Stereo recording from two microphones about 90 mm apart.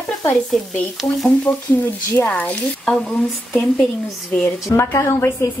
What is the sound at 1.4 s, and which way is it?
A woman's voice, 20° left (ahead or behind).